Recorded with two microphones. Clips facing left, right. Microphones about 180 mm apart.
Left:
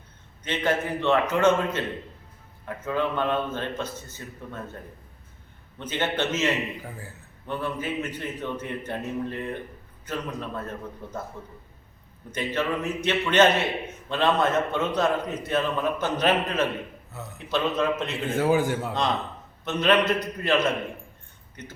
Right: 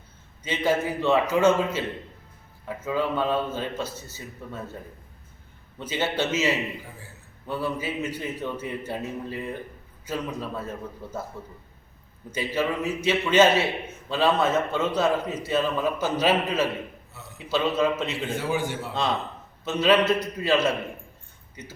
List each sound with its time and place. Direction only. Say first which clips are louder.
0.4 s a man's voice: right 2 dB; 10° right (ahead or behind)
5.8 s a man's voice: even; 10° right (ahead or behind)
12.3 s a man's voice: right 1 dB; 10° right (ahead or behind)
18.3 s a man's voice: left 8 dB; 45° left (ahead or behind)
19.6 s a man's voice: right 1 dB; 5° right (ahead or behind)